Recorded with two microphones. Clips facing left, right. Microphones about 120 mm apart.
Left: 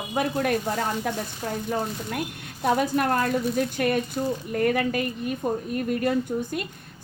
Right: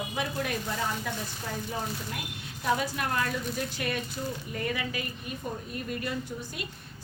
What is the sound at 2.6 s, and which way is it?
A woman's voice, 50° left (ahead or behind).